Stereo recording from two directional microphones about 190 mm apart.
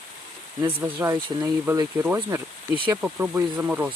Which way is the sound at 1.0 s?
15° right (ahead or behind).